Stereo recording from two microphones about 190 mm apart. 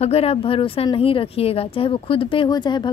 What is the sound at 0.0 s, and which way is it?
Speech, 30° left (ahead or behind).